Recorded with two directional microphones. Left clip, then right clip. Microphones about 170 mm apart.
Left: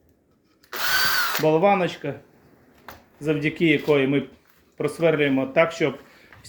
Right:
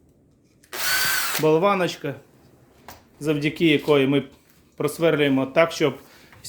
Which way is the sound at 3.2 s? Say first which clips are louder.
Even; 25° right (ahead or behind).